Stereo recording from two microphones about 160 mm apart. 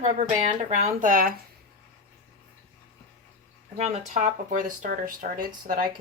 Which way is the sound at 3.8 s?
45° right (ahead or behind).